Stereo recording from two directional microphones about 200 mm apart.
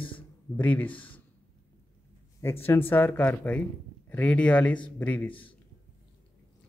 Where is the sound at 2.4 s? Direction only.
15° left (ahead or behind).